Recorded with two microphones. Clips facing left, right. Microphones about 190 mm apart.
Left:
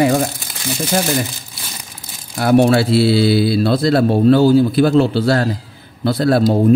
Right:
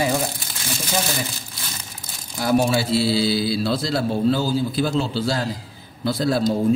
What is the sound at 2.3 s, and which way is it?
Speech, 65° left (ahead or behind).